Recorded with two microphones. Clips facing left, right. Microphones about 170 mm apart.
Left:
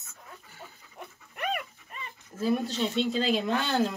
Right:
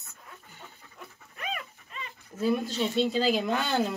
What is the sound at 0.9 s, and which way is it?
Dog, 65° left (ahead or behind).